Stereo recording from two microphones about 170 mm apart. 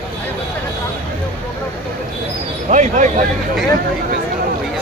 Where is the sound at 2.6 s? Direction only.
45° right (ahead or behind).